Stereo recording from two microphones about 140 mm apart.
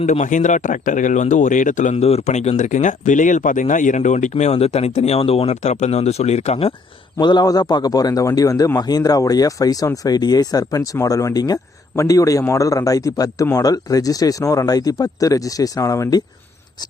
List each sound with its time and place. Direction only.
0.0 s speech: 60° left (ahead or behind)
7.2 s a man's voice: 30° left (ahead or behind)